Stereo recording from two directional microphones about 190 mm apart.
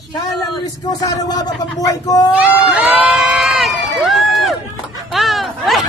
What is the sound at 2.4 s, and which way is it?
Crowd, centre (ahead or behind).